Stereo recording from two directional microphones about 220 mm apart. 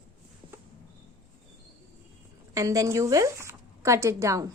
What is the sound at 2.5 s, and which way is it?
A woman's voice, 15° right (ahead or behind).